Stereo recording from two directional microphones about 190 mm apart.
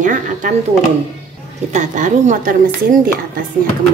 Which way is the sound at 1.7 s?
40° right (ahead or behind).